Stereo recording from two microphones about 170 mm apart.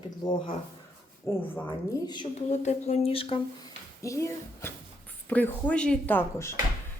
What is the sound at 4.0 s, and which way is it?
A woman's voice, 15° left (ahead or behind).